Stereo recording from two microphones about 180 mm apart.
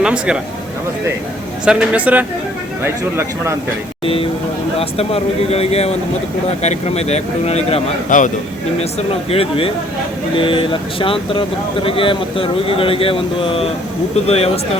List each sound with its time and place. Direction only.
0.0 s speech: 5° right (ahead or behind)
1.6 s speech: 5° right (ahead or behind)
4.0 s speech: 30° left (ahead or behind)